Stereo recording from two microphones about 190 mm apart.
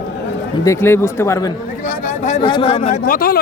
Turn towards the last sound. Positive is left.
turn(degrees=50)  # may be behind; listen again after turning